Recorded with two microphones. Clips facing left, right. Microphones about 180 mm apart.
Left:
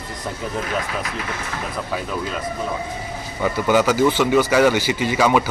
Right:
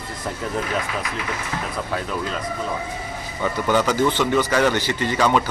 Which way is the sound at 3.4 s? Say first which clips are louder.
Left 3 dB; 10° left (ahead or behind).